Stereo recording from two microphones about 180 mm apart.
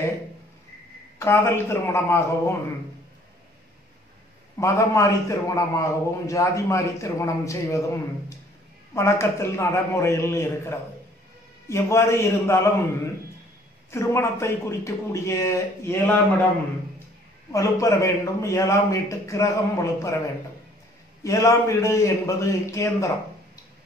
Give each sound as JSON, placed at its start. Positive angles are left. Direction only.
{"t": 1.2, "sound": "a man's voice", "side_deg": 15}
{"t": 4.6, "sound": "a man's voice", "side_deg": 15}
{"t": 13.8, "sound": "a man's voice", "side_deg": 15}
{"t": 17.5, "sound": "a man's voice", "side_deg": 15}
{"t": 21.2, "sound": "a man's voice", "side_deg": 15}